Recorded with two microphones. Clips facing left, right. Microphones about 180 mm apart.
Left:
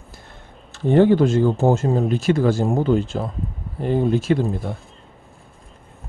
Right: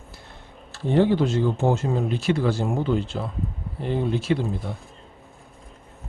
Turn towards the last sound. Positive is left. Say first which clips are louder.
# left 4 dB
turn(degrees=45)  # may be behind; listen again after turning